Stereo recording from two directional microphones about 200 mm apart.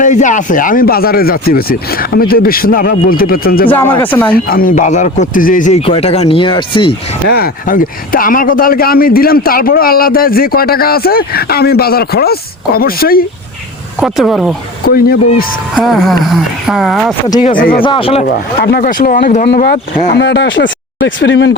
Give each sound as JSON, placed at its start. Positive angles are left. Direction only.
{"t": 0.0, "sound": "a man's voice", "side_deg": 40}
{"t": 4.0, "sound": "speech", "side_deg": 10}
{"t": 4.4, "sound": "speech", "side_deg": 45}
{"t": 7.3, "sound": "a man's voice", "side_deg": 50}
{"t": 14.0, "sound": "speech", "side_deg": 0}
{"t": 14.8, "sound": "a man's voice", "side_deg": 50}
{"t": 15.7, "sound": "speech", "side_deg": 0}
{"t": 17.4, "sound": "a man's voice", "side_deg": 45}
{"t": 17.8, "sound": "speech", "side_deg": 25}
{"t": 18.3, "sound": "a man's voice", "side_deg": 55}
{"t": 20.1, "sound": "speech", "side_deg": 60}